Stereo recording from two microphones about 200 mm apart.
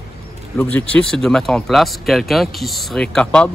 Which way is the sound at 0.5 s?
5° left (ahead or behind).